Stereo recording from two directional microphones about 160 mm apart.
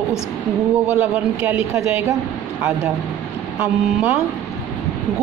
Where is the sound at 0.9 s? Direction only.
10° right (ahead or behind).